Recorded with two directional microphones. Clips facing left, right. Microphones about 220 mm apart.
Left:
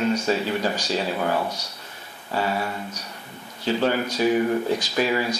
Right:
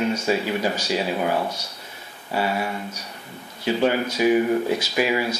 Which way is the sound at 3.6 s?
10° right (ahead or behind).